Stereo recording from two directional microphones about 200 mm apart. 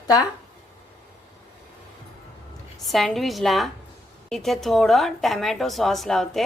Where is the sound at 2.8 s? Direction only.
Centre (ahead or behind).